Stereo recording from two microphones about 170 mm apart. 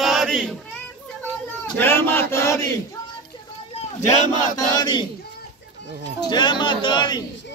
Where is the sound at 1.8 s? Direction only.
15° left (ahead or behind).